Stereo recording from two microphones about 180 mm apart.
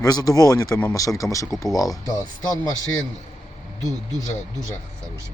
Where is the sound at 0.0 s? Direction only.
20° left (ahead or behind).